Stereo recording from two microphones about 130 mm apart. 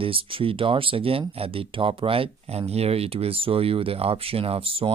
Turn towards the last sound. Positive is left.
turn(degrees=-45)  # may be behind; listen again after turning